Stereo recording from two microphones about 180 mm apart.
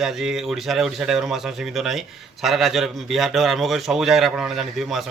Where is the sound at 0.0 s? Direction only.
Centre (ahead or behind).